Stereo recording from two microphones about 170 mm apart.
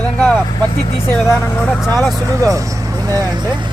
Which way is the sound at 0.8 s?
35° left (ahead or behind).